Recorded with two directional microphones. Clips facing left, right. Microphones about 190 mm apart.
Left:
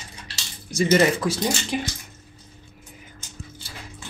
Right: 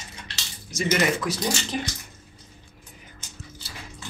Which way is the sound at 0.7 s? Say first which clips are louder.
Left 5 dB; 30° left (ahead or behind).